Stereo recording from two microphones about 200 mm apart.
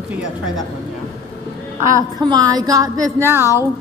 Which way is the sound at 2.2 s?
20° right (ahead or behind).